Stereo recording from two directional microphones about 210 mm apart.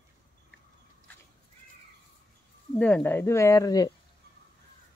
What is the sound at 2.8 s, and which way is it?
Speech, 5° left (ahead or behind).